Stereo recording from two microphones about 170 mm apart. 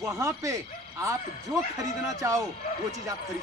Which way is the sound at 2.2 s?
20° right (ahead or behind).